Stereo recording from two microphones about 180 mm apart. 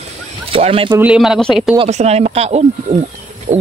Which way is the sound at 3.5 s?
45° right (ahead or behind).